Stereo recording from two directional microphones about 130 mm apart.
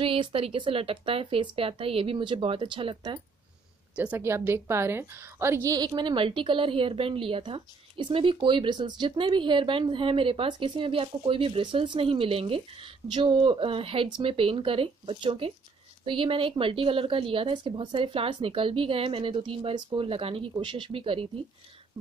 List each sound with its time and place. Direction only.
0.0 s a woman's voice: 45° right (ahead or behind)
3.9 s a woman's voice: 10° right (ahead or behind); by 21.3 s 40° right (ahead or behind)